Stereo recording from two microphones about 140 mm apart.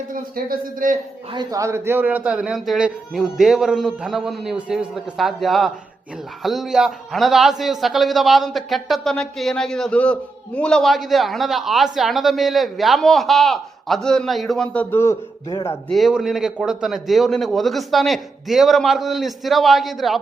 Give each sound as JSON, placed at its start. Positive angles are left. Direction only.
{"t": 0.1, "sound": "a man's voice", "side_deg": -90}
{"t": 1.3, "sound": "speech", "side_deg": -30}
{"t": 15.9, "sound": "speech", "side_deg": 0}